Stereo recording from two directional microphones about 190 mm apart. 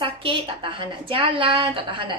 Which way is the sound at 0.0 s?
30° right (ahead or behind).